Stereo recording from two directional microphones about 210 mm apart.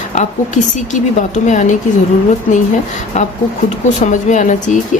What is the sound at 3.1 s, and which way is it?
A woman's voice, 35° left (ahead or behind).